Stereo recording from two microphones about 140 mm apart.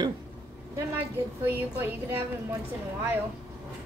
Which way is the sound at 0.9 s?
15° right (ahead or behind).